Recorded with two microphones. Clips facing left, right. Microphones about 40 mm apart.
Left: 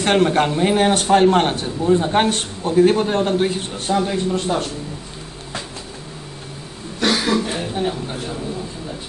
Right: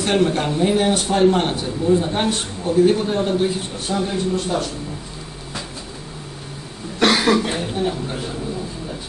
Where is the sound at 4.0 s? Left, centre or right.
Centre.